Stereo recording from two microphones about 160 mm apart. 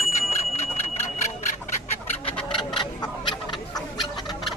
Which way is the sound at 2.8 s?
30° left (ahead or behind).